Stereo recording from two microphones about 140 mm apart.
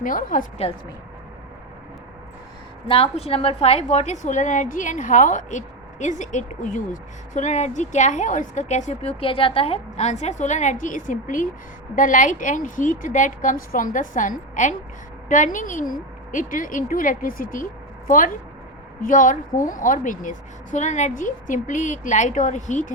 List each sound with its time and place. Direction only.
0.0 s a woman's voice: 70° left (ahead or behind)
2.8 s a woman's voice: 40° left (ahead or behind); by 17.7 s 80° left
19.0 s a woman's voice: 70° left (ahead or behind)